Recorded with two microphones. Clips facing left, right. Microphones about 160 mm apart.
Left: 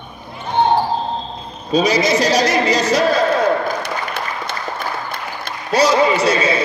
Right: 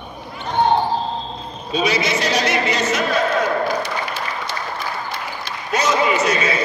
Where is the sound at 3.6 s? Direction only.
60° left (ahead or behind).